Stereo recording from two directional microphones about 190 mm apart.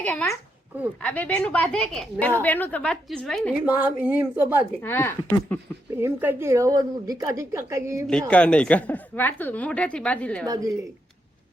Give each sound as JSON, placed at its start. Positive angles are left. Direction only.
{"t": 0.0, "sound": "a woman's voice", "side_deg": 10}
{"t": 3.8, "sound": "a woman's voice", "side_deg": -10}
{"t": 4.8, "sound": "a woman's voice", "side_deg": 10}
{"t": 6.0, "sound": "a woman's voice", "side_deg": -10}
{"t": 8.3, "sound": "a woman's voice", "side_deg": 5}
{"t": 10.4, "sound": "a woman's voice", "side_deg": -20}